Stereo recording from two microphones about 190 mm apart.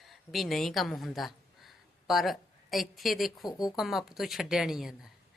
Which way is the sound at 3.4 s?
20° left (ahead or behind).